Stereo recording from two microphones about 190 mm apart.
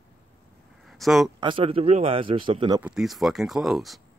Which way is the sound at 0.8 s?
Centre (ahead or behind).